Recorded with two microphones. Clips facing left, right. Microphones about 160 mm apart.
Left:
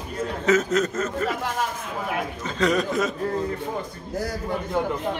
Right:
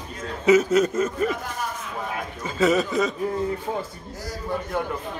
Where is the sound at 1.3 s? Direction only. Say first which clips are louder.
Left 2 dB; 85° left.